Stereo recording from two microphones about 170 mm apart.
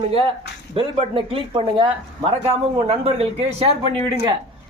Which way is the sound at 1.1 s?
30° right (ahead or behind).